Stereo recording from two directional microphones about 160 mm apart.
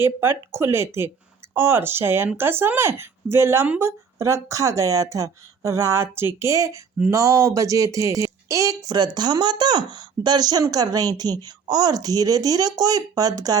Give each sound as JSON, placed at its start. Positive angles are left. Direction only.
{"t": 0.0, "sound": "speech", "side_deg": -15}